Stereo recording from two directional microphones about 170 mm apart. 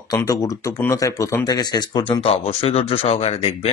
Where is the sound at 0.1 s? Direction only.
20° left (ahead or behind).